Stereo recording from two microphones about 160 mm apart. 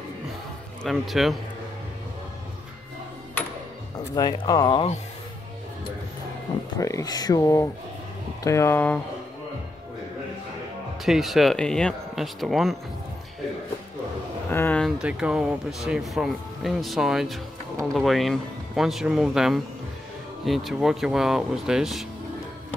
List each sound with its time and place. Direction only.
0.8 s speech: centre (ahead or behind)
4.1 s speech: 25° left (ahead or behind)
6.8 s speech: 20° left (ahead or behind)
11.1 s speech: centre (ahead or behind)
14.5 s speech: 15° left (ahead or behind)
14.8 s speech: 5° right (ahead or behind)